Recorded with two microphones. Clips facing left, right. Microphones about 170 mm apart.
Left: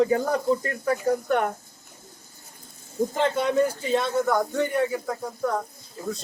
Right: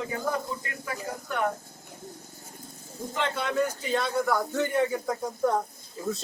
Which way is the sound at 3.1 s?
40° left (ahead or behind).